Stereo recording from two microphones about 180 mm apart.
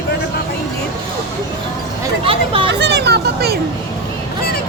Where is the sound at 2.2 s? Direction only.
30° right (ahead or behind).